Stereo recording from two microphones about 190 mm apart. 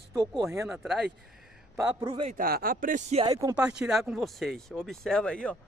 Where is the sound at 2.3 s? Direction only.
50° right (ahead or behind).